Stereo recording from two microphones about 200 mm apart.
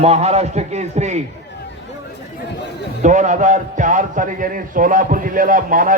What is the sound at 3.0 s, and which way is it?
A man's voice, 40° right (ahead or behind).